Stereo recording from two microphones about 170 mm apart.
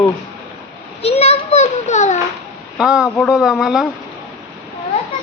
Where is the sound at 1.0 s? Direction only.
35° left (ahead or behind).